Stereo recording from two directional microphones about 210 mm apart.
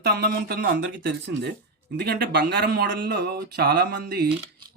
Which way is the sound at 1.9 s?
50° right (ahead or behind).